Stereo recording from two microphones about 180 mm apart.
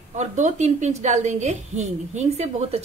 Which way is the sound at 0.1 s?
40° right (ahead or behind).